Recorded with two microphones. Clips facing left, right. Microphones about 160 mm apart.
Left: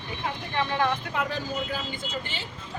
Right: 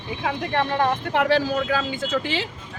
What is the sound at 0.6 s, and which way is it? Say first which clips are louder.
Speech: right 2 dB; 40° right (ahead or behind).